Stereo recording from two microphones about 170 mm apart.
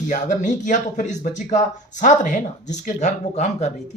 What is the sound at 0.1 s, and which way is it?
Speech, 45° left (ahead or behind).